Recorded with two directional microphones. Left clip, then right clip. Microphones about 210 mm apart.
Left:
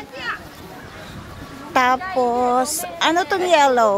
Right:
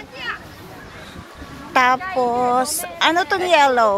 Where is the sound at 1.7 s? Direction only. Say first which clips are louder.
Right 1 dB; centre (ahead or behind).